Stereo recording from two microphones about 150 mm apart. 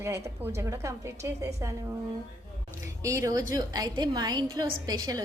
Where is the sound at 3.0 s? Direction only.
20° right (ahead or behind).